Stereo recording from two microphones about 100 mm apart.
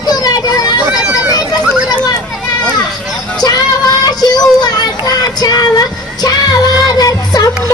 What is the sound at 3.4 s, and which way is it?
Music, 40° left (ahead or behind).